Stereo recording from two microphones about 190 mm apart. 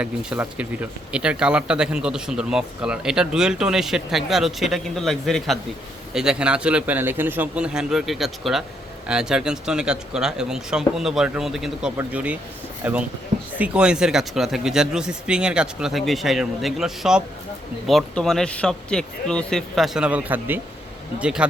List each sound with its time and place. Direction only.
0.0 s speech: 5° right (ahead or behind)